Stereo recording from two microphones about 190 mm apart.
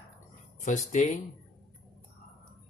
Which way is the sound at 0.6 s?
35° left (ahead or behind).